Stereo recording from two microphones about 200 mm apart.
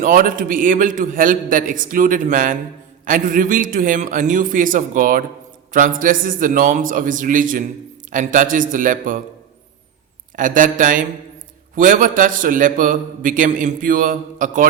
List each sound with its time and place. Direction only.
0.0 s a man's voice: 45° right (ahead or behind)
10.3 s a man's voice: 40° right (ahead or behind)